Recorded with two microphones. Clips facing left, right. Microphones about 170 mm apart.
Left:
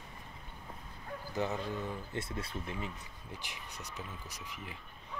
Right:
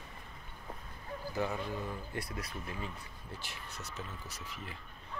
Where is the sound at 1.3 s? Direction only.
20° left (ahead or behind).